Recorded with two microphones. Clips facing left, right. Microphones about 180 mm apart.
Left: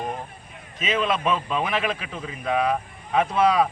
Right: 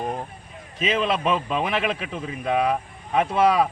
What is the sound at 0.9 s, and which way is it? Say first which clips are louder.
Speech: even; 30° right (ahead or behind).